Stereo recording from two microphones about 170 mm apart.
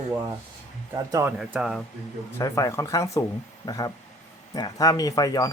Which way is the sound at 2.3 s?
20° left (ahead or behind).